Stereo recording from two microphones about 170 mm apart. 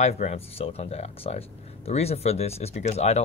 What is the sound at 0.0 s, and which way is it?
Speech, 40° left (ahead or behind).